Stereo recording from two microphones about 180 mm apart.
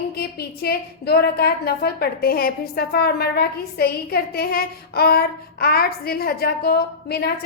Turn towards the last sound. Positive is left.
turn(degrees=60)  # may be behind; listen again after turning